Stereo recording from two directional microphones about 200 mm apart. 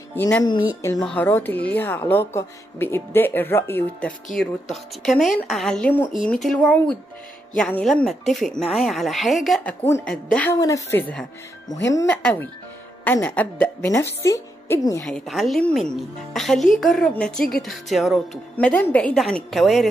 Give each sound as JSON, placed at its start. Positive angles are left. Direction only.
{"t": 0.2, "sound": "a woman's voice", "side_deg": 10}
{"t": 15.0, "sound": "speech", "side_deg": 0}